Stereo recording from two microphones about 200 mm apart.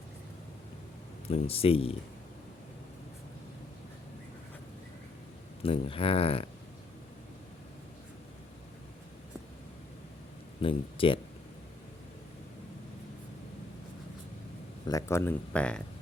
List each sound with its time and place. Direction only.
1.3 s speech: 30° left (ahead or behind)
5.6 s speech: 30° left (ahead or behind)
10.6 s speech: 25° left (ahead or behind)
14.8 s speech: 15° left (ahead or behind)